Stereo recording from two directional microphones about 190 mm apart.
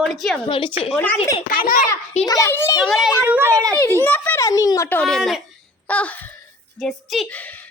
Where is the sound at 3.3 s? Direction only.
10° right (ahead or behind).